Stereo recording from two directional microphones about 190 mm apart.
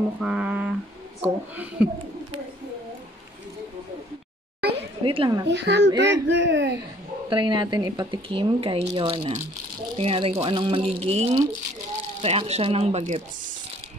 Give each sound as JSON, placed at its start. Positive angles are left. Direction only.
{"t": 0.2, "sound": "a sound", "side_deg": -5}
{"t": 1.2, "sound": "a woman's voice", "side_deg": -10}
{"t": 4.6, "sound": "a sound", "side_deg": -60}
{"t": 5.0, "sound": "speech", "side_deg": -25}
{"t": 5.5, "sound": "speech", "side_deg": -65}
{"t": 7.2, "sound": "speech", "side_deg": -25}